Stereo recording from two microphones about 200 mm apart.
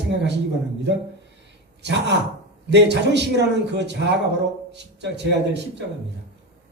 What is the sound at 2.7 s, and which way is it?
A man's voice, 60° right (ahead or behind).